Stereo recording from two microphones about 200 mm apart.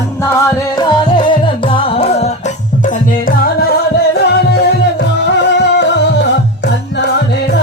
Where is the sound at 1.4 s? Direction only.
25° left (ahead or behind).